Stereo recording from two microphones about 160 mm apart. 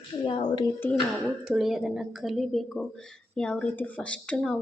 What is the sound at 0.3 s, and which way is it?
Speech, 35° left (ahead or behind).